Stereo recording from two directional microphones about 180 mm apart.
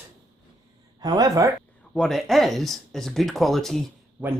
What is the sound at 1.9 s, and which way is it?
Speech, centre (ahead or behind).